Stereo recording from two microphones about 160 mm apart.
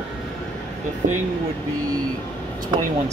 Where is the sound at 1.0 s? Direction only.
55° right (ahead or behind).